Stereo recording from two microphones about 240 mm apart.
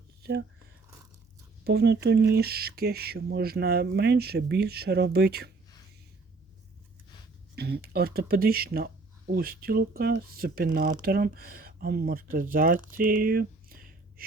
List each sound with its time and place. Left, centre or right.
0.2 s a sound: right
1.6 s speech: right
7.5 s speech: right